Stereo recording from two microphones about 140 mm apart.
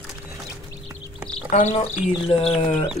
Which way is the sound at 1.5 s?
60° left (ahead or behind).